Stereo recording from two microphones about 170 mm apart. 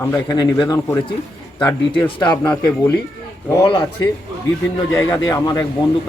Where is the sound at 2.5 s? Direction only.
10° left (ahead or behind).